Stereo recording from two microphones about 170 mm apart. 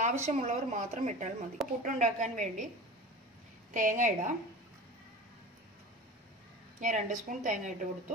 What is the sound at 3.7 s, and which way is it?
Speech, 50° right (ahead or behind).